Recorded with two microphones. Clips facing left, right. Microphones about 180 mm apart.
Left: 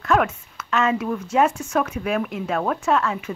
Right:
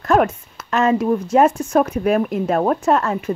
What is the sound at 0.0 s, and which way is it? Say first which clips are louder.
Speech: right 4 dB; 40° right (ahead or behind).